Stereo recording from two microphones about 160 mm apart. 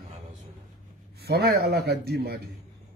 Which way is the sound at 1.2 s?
85° right.